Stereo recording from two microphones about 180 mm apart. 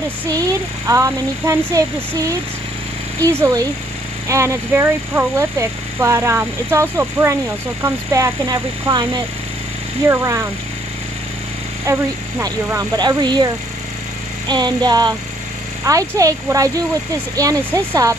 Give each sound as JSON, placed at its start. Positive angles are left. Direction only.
{"t": 0.8, "sound": "speech", "side_deg": -15}
{"t": 11.8, "sound": "speech", "side_deg": -15}
{"t": 14.5, "sound": "speech", "side_deg": -25}